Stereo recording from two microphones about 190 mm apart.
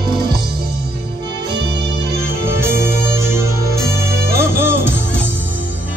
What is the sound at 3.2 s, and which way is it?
Music, 15° right (ahead or behind).